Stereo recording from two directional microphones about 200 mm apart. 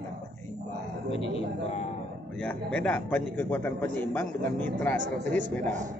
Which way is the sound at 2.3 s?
10° left (ahead or behind).